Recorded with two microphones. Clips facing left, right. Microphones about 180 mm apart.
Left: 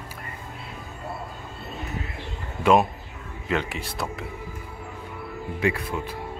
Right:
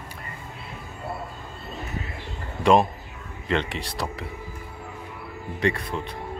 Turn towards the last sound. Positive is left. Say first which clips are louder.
# even
turn(degrees=5)  # may be behind; listen again after turning